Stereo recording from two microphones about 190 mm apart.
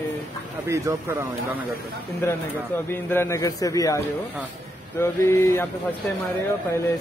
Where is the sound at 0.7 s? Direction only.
15° right (ahead or behind).